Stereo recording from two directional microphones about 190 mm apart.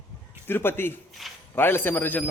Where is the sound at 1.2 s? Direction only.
Centre (ahead or behind).